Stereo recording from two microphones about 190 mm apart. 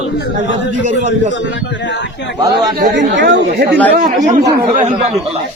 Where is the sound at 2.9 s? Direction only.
65° right (ahead or behind).